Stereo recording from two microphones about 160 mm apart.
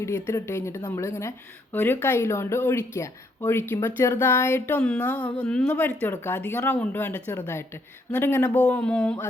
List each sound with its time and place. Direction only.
0.0 s speech: 15° left (ahead or behind)